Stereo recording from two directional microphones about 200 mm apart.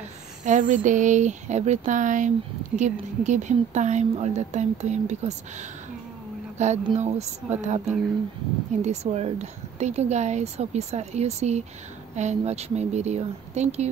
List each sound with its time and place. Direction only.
0.5 s speech: 40° right (ahead or behind)
6.6 s speech: 35° right (ahead or behind)
8.8 s speech: 35° right (ahead or behind)